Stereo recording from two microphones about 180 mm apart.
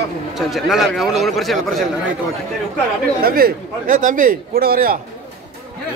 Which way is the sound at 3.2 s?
55° right (ahead or behind).